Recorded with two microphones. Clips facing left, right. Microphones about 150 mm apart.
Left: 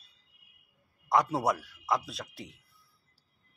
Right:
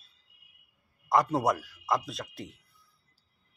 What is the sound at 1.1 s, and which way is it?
A man's voice, centre (ahead or behind).